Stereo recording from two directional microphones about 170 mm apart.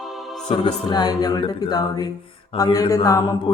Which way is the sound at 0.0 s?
Centre (ahead or behind).